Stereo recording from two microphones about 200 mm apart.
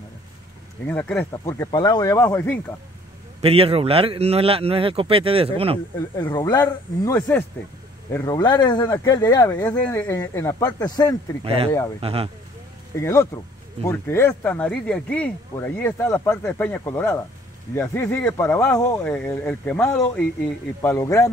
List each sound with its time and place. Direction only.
0.8 s speech: 10° left (ahead or behind)
3.4 s speech: 30° right (ahead or behind)
6.1 s speech: 20° left (ahead or behind)
11.4 s speech: 30° right (ahead or behind)
12.9 s speech: 15° left (ahead or behind)